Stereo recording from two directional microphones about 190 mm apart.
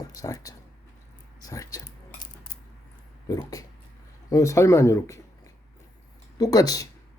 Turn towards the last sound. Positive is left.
turn(degrees=20)  # may be behind; listen again after turning